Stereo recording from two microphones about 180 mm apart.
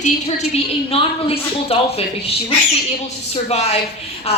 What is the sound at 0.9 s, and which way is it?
Speech, 35° left (ahead or behind).